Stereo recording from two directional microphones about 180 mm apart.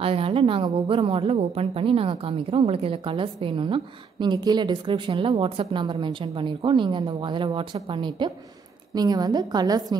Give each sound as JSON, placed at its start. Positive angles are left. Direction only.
{"t": 0.0, "sound": "a woman's voice", "side_deg": -30}